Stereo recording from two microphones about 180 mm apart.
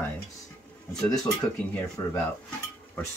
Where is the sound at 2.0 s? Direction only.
20° left (ahead or behind).